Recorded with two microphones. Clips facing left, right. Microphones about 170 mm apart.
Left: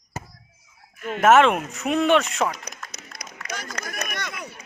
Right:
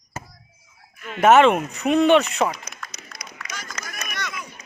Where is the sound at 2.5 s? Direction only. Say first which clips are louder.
Even; 45° left (ahead or behind).